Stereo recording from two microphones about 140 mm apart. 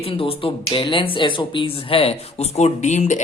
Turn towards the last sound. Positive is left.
turn(degrees=60)  # may be behind; listen again after turning